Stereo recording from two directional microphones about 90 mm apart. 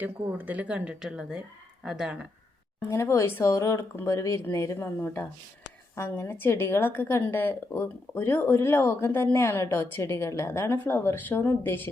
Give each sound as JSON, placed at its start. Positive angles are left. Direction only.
{"t": 0.0, "sound": "speech", "side_deg": -20}
{"t": 2.9, "sound": "a woman's voice", "side_deg": 30}